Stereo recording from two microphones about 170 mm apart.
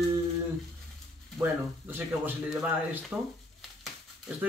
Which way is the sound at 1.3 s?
10° right (ahead or behind).